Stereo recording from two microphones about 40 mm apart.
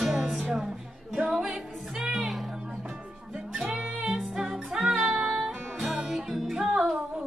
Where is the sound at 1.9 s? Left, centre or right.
Centre.